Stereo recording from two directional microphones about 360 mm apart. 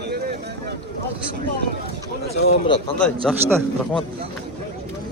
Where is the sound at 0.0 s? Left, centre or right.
Right.